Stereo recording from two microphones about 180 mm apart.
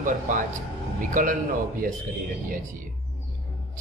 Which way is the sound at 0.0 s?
45° right (ahead or behind).